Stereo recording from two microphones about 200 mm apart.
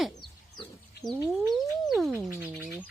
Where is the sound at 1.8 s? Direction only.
Centre (ahead or behind).